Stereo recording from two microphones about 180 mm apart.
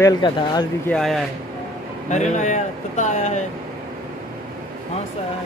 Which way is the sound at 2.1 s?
40° left (ahead or behind).